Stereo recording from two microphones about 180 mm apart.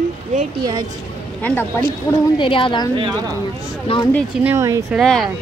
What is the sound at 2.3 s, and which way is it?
Speech, 30° left (ahead or behind).